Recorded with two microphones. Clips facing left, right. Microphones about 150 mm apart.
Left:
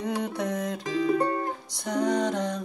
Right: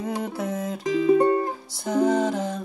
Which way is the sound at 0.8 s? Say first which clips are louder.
Right 7 dB; 25° right (ahead or behind).